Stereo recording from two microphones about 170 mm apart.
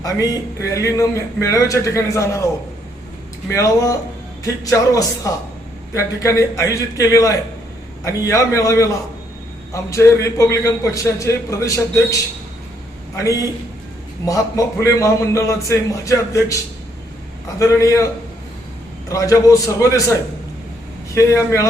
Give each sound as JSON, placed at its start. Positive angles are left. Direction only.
{"t": 0.0, "sound": "a man's voice", "side_deg": 20}
{"t": 3.5, "sound": "a man's voice", "side_deg": 20}
{"t": 13.1, "sound": "a man's voice", "side_deg": 20}
{"t": 17.6, "sound": "a man's voice", "side_deg": 20}
{"t": 19.0, "sound": "a man's voice", "side_deg": 20}
{"t": 21.2, "sound": "a man's voice", "side_deg": 15}